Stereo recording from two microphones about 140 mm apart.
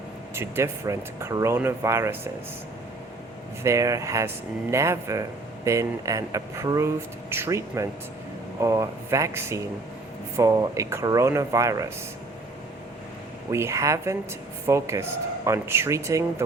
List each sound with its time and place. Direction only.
0.3 s speech: 20° right (ahead or behind)
3.6 s speech: 20° right (ahead or behind)
13.5 s speech: 20° right (ahead or behind)